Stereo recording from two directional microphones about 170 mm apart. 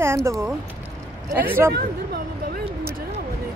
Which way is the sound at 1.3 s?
10° right (ahead or behind).